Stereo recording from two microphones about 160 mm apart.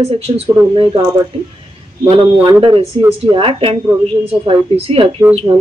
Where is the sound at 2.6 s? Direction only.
35° right (ahead or behind).